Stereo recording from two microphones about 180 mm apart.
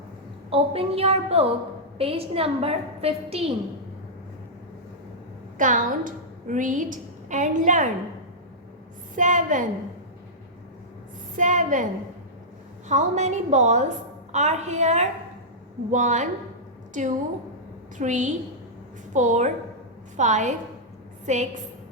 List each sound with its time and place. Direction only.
0.5 s a woman's voice: 30° right (ahead or behind)
5.5 s a woman's voice: 45° right (ahead or behind)
9.1 s a woman's voice: 45° right (ahead or behind)
11.3 s a woman's voice: 45° right (ahead or behind)
12.9 s a woman's voice: 40° right (ahead or behind)